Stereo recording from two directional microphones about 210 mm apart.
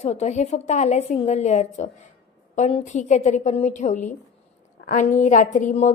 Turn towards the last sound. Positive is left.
turn(degrees=35)  # may be behind; listen again after turning